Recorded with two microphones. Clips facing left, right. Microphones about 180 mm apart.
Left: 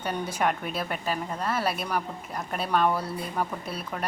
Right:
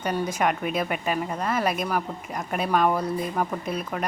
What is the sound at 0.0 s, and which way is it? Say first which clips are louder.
Speech: right 4 dB; 5° left (ahead or behind).